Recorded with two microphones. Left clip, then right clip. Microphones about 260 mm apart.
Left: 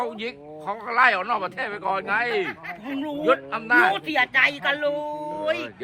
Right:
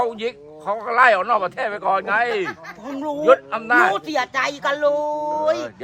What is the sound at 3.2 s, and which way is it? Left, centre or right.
Speech, right.